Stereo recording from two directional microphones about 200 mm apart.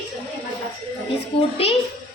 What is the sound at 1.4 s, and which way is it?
Speech, 30° left (ahead or behind).